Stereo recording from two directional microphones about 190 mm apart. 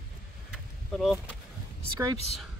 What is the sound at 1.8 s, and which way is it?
Speech, 20° right (ahead or behind).